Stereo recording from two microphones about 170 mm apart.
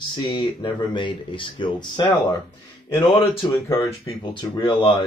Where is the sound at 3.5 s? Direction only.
15° left (ahead or behind).